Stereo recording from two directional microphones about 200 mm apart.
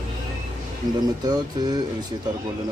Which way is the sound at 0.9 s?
20° right (ahead or behind).